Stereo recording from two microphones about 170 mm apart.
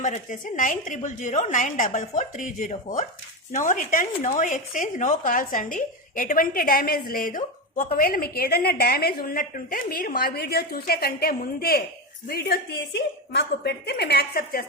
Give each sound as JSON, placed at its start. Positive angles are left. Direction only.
{"t": 0.0, "sound": "a woman's voice", "side_deg": 50}